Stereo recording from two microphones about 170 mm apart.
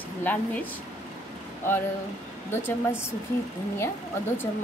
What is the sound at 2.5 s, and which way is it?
Speech, 15° left (ahead or behind).